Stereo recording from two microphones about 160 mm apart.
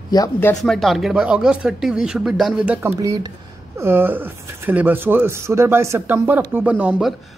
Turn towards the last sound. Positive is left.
turn(degrees=-10)  # may be behind; listen again after turning